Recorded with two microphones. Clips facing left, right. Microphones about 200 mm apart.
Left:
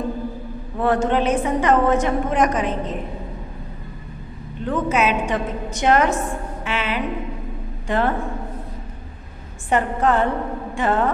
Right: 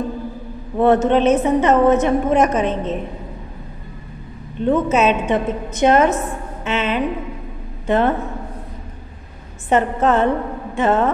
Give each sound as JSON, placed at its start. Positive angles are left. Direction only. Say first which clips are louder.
{"t": 0.7, "sound": "a woman's voice", "louder": "right 5 dB", "side_deg": -20}
{"t": 4.6, "sound": "a woman's voice", "louder": "right 5 dB", "side_deg": -25}
{"t": 9.7, "sound": "a woman's voice", "louder": "right 3 dB", "side_deg": -20}